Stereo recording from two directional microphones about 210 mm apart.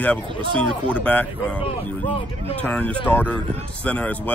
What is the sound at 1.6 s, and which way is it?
Speech, 30° left (ahead or behind).